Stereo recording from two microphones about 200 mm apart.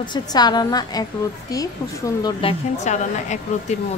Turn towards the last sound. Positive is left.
turn(degrees=35)  # may be behind; listen again after turning